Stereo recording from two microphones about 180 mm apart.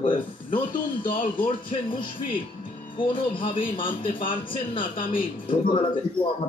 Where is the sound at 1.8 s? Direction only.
30° left (ahead or behind).